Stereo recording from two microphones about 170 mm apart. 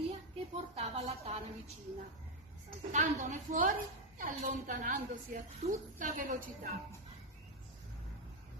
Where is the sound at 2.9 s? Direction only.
45° right (ahead or behind).